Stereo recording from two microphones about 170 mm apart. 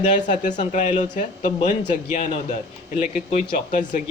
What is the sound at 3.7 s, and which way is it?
Speech, 50° left (ahead or behind).